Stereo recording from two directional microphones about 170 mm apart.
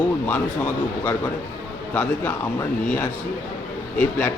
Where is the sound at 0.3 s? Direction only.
10° left (ahead or behind).